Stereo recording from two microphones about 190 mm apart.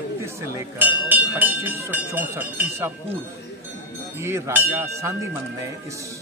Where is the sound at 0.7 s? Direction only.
10° right (ahead or behind).